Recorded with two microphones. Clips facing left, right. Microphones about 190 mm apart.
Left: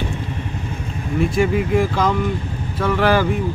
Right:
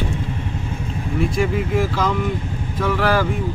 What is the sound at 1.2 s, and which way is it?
Speech, centre (ahead or behind).